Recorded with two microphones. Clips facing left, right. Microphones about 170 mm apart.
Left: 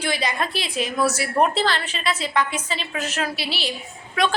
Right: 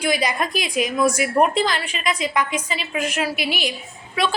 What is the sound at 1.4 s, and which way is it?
A woman's voice, 10° right (ahead or behind).